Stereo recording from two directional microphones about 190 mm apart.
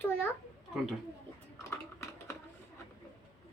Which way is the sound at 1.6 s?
15° left (ahead or behind).